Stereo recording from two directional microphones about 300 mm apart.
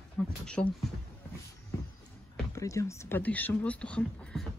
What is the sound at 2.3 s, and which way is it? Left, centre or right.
Speech, centre.